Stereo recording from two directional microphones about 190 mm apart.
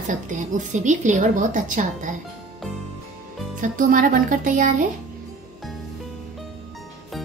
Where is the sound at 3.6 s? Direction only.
45° right (ahead or behind).